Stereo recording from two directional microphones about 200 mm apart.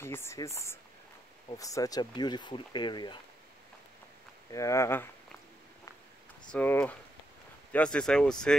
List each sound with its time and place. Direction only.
0.0 s speech: 10° left (ahead or behind)
4.5 s speech: 15° left (ahead or behind)
6.5 s speech: 10° left (ahead or behind)